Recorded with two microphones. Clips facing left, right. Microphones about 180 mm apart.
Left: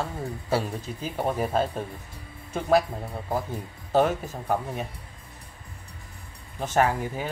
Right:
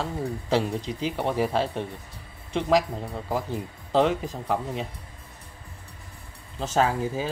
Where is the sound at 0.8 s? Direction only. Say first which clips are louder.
Right 5 dB; 90° right.